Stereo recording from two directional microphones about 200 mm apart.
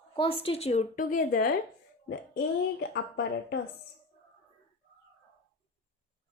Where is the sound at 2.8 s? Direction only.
55° left (ahead or behind).